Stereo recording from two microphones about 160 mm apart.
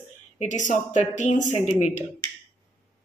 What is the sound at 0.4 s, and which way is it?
Speech, 50° left (ahead or behind).